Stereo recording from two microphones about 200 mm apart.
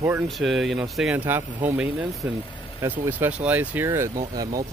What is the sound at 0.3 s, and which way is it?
Speech, centre (ahead or behind).